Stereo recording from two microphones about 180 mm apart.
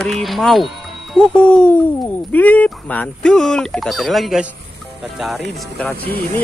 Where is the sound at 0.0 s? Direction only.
Centre (ahead or behind).